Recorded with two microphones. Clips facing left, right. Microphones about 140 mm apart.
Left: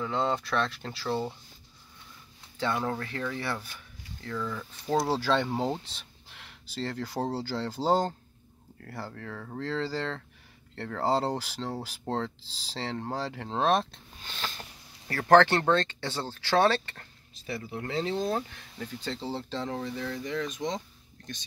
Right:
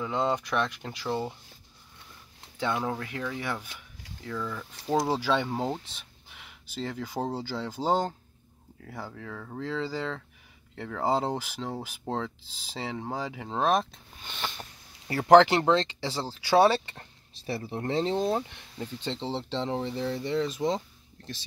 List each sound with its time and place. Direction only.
0.0 s speech: 15° right (ahead or behind)
2.8 s speech: 15° right (ahead or behind)
5.5 s speech: centre (ahead or behind); by 16.0 s 20° right (ahead or behind)
16.0 s speech: 5° right (ahead or behind); by 21.5 s 30° right (ahead or behind)